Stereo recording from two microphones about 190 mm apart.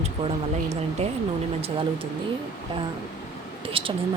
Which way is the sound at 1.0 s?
35° right (ahead or behind).